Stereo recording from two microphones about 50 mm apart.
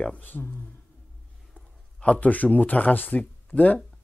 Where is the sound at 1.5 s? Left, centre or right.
Left.